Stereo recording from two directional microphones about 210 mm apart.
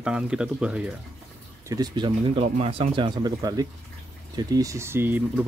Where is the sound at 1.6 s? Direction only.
20° right (ahead or behind).